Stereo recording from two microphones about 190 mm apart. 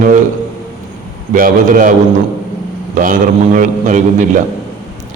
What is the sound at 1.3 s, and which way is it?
Speech, 45° right (ahead or behind).